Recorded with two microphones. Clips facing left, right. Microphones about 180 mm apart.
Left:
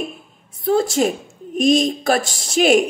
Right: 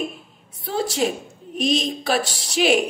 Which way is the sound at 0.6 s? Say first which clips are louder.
Left 6 dB; 45° left (ahead or behind).